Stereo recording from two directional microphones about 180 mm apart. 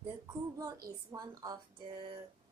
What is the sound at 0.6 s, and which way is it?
Speech, 20° right (ahead or behind).